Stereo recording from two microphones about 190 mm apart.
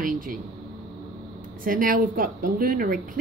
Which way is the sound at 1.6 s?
45° right (ahead or behind).